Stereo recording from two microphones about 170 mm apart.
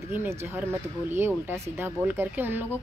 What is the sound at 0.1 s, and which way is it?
Speech, 10° right (ahead or behind).